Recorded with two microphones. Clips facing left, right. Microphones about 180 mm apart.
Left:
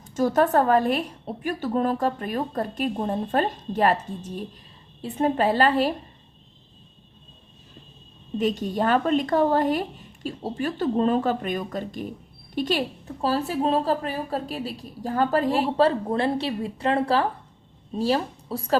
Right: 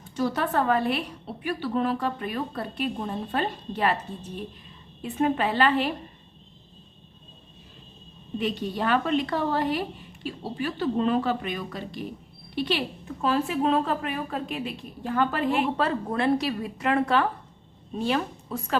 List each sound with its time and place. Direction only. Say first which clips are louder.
0.0 s a woman's voice: left 6 dB; 45° left (ahead or behind)
5.0 s a woman's voice: left 3 dB; 35° left (ahead or behind)
8.4 s a woman's voice: left 4 dB; 45° left (ahead or behind)